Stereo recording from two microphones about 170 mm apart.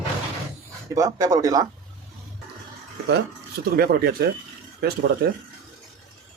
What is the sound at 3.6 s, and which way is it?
Speech, 65° right (ahead or behind).